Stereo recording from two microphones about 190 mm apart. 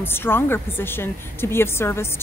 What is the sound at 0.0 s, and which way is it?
A woman's voice, 10° left (ahead or behind).